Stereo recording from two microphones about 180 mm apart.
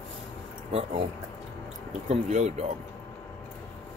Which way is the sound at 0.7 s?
35° right (ahead or behind).